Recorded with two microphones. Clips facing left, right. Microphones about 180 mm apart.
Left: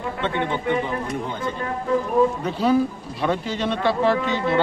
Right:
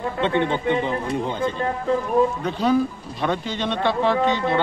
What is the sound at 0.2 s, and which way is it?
Speech, 25° right (ahead or behind).